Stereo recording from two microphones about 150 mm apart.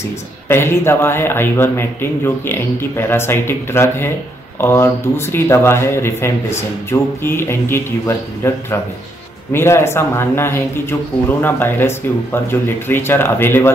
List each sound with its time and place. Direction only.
0.5 s speech: 15° left (ahead or behind)